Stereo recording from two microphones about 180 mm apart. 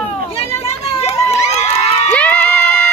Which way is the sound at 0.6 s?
35° left (ahead or behind).